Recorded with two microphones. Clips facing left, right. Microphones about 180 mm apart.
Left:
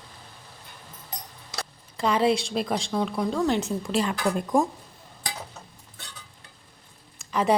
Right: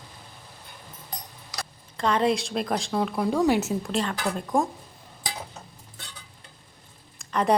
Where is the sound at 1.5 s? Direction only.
25° left (ahead or behind).